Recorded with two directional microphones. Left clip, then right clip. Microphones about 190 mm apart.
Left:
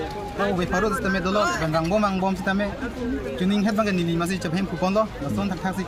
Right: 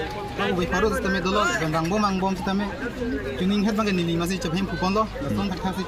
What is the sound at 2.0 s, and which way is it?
Speech, 15° left (ahead or behind).